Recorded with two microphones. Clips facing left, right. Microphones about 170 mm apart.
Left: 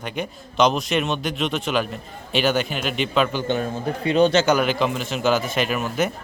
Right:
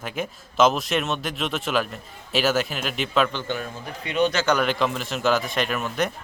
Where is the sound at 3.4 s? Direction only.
30° left (ahead or behind).